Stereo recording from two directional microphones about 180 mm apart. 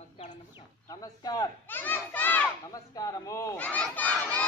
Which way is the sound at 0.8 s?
20° left (ahead or behind).